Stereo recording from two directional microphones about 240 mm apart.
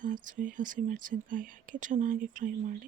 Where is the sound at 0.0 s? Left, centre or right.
Right.